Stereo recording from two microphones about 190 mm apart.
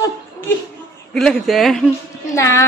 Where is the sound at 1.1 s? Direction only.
Centre (ahead or behind).